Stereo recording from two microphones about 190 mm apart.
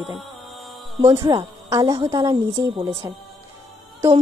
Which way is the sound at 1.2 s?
20° right (ahead or behind).